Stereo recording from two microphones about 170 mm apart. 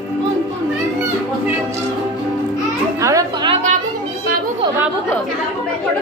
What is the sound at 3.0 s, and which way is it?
Chatter, 20° right (ahead or behind).